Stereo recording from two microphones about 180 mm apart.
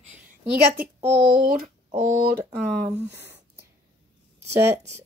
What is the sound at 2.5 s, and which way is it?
Speech, 65° right (ahead or behind).